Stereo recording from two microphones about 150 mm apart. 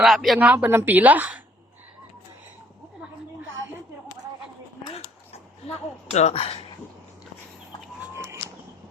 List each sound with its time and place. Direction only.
0.0 s a woman's voice: centre (ahead or behind)
6.1 s speech: 45° left (ahead or behind)
8.1 s a sound: 20° right (ahead or behind)